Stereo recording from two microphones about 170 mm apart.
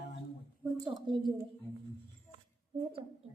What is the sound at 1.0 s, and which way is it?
Speech, 25° right (ahead or behind).